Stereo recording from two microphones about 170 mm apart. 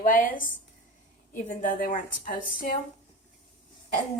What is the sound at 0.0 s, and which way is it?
A woman's voice, 55° left (ahead or behind).